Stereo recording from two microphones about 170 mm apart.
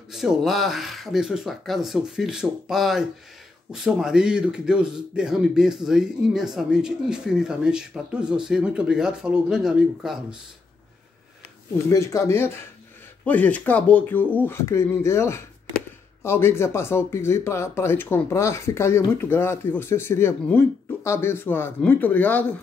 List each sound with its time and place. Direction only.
0.1 s speech: centre (ahead or behind)
11.9 s speech: 15° left (ahead or behind)